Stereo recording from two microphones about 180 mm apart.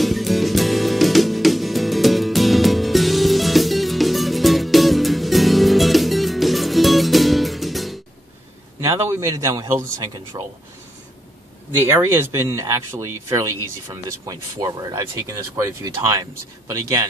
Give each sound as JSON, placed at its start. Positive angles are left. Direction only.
{"t": 0.0, "sound": "music", "side_deg": 0}
{"t": 8.8, "sound": "a man's voice", "side_deg": -15}
{"t": 11.8, "sound": "speech", "side_deg": -15}